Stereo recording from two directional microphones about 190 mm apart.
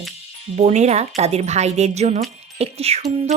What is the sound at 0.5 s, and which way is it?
Speech, 35° right (ahead or behind).